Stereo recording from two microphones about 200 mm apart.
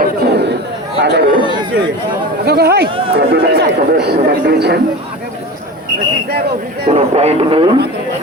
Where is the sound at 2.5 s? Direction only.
55° right (ahead or behind).